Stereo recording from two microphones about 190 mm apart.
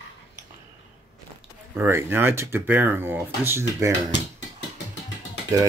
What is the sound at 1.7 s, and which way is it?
Speech, 15° right (ahead or behind).